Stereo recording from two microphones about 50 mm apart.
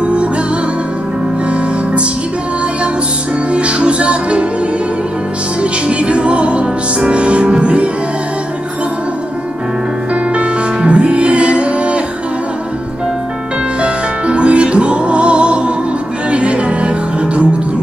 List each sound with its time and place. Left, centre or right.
0.0 s music: right
3.5 s music: right
5.6 s music: right
10.3 s music: right
13.7 s music: right